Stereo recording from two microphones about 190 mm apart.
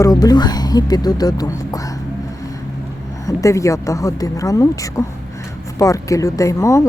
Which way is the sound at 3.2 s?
15° left (ahead or behind).